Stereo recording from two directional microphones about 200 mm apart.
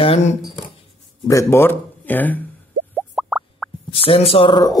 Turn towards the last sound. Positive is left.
turn(degrees=20)  # may be behind; listen again after turning